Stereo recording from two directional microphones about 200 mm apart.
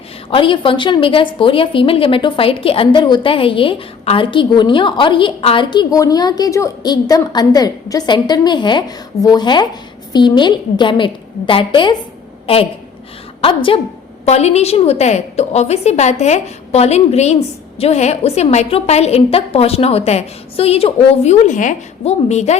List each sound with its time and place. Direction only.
0.3 s a woman's voice: 25° left (ahead or behind)